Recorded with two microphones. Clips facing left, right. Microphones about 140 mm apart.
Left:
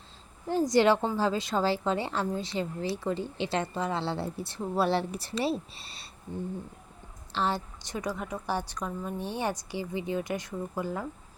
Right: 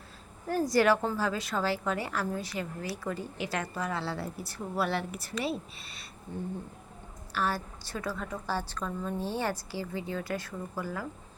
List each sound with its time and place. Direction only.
0.4 s a woman's voice: 20° left (ahead or behind)
7.3 s a woman's voice: 20° left (ahead or behind)